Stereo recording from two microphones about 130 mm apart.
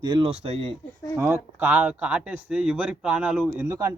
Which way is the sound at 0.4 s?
55° right (ahead or behind).